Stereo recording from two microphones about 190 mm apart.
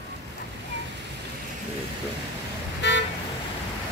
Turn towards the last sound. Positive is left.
turn(degrees=65)  # may be behind; listen again after turning